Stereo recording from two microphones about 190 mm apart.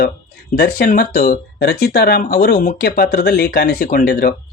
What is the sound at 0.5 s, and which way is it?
Speech, 50° left (ahead or behind).